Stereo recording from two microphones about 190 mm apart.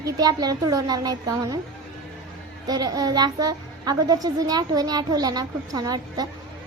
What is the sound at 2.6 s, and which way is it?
A woman's voice, 20° right (ahead or behind).